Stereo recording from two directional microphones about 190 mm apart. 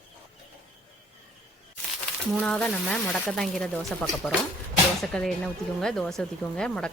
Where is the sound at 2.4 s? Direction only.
5° left (ahead or behind).